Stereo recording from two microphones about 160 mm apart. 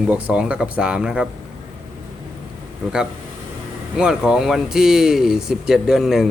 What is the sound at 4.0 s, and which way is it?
A man's voice, 5° right (ahead or behind).